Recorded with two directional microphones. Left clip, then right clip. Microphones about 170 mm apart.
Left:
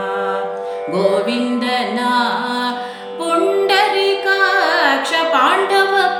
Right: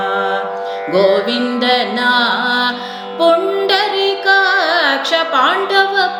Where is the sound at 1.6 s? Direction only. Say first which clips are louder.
Right 6 dB; 15° left (ahead or behind).